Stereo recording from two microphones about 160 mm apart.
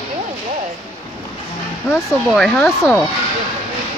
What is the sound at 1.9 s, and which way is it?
Speech, 5° left (ahead or behind).